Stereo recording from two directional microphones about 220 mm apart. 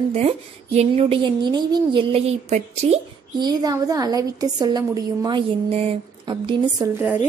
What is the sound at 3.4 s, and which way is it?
A woman's voice, 20° right (ahead or behind).